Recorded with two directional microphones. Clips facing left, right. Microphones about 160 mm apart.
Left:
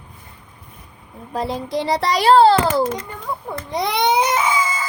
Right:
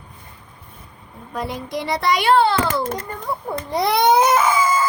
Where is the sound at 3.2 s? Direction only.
10° right (ahead or behind).